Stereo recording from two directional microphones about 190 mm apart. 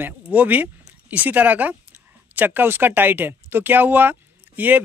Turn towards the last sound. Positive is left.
turn(degrees=-10)  # may be behind; listen again after turning